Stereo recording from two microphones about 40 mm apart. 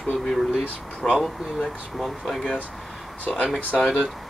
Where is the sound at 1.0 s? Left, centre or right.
Left.